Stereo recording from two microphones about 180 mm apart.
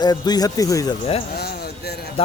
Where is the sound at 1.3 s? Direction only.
60° left (ahead or behind).